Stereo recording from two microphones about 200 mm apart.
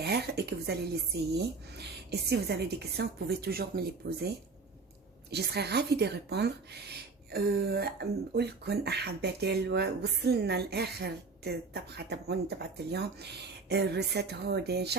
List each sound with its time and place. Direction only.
0.0 s a woman's voice: 55° right (ahead or behind)
5.3 s speech: 55° right (ahead or behind)